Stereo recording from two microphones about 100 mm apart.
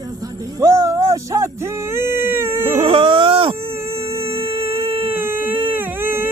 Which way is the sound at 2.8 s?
70° right (ahead or behind).